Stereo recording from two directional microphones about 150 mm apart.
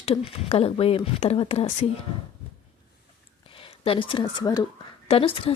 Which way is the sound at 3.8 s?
35° left (ahead or behind).